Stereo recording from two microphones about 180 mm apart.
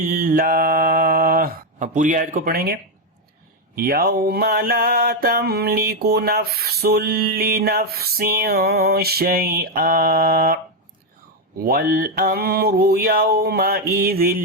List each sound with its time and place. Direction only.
0.0 s mantra: 50° right (ahead or behind)
3.8 s mantra: 55° right (ahead or behind)
11.6 s mantra: 55° right (ahead or behind)